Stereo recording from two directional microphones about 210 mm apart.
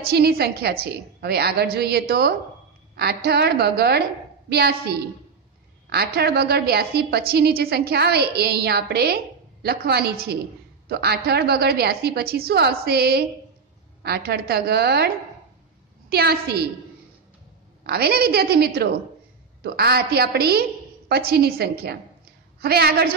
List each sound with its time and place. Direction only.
0.0 s a woman's voice: 45° right (ahead or behind)
17.8 s a woman's voice: 50° right (ahead or behind)